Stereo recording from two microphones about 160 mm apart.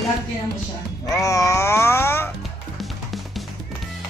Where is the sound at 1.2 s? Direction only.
20° left (ahead or behind).